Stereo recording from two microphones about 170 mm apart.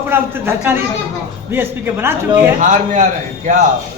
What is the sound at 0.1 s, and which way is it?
A man's voice, 15° right (ahead or behind).